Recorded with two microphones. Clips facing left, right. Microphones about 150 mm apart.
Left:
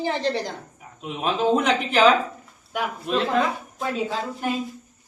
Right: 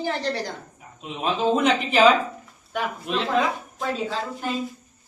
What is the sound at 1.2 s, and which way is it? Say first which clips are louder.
Speech: even; centre (ahead or behind).